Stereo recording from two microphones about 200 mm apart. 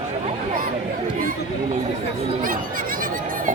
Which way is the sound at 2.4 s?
45° right (ahead or behind).